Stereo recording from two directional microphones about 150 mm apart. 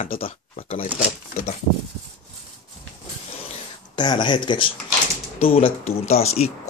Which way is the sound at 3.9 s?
30° left (ahead or behind).